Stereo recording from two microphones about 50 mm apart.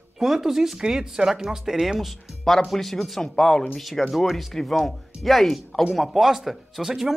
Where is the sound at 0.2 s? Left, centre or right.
Centre.